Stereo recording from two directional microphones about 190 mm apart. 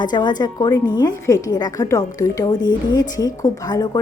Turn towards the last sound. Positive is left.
turn(degrees=20)  # may be behind; listen again after turning